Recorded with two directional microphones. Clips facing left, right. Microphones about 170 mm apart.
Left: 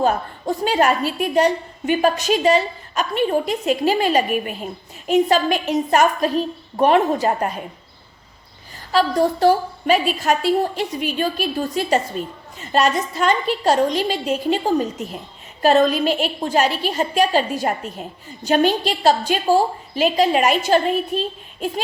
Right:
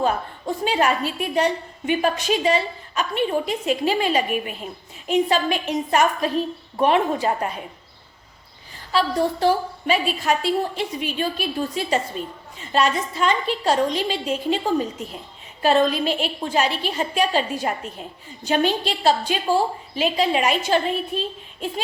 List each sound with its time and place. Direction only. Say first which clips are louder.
0.0 s a woman's voice: left 3 dB; 40° left (ahead or behind)
8.9 s a woman's voice: left 3 dB; 40° left (ahead or behind)